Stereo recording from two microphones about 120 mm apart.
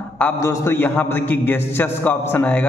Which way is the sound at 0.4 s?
20° left (ahead or behind).